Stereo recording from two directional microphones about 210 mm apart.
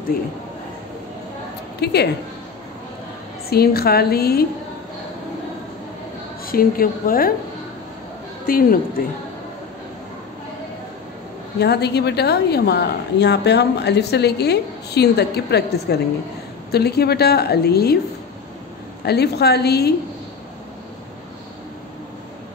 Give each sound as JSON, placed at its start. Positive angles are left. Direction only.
{"t": 1.8, "sound": "a woman's voice", "side_deg": 50}
{"t": 3.4, "sound": "a woman's voice", "side_deg": 45}
{"t": 6.4, "sound": "a woman's voice", "side_deg": 45}
{"t": 8.5, "sound": "a woman's voice", "side_deg": 45}
{"t": 11.6, "sound": "a woman's voice", "side_deg": 50}
{"t": 19.0, "sound": "a woman's voice", "side_deg": 50}